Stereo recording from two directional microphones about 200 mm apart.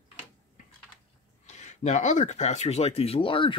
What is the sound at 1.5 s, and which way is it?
Speech, 35° left (ahead or behind).